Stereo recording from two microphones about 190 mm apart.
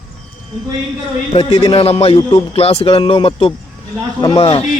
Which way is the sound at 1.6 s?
30° left (ahead or behind).